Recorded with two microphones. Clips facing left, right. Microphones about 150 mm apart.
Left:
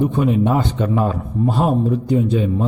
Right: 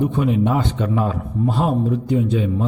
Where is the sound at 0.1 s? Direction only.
40° left (ahead or behind).